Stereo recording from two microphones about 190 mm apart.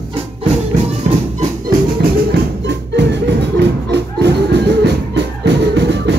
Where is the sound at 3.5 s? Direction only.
60° right (ahead or behind).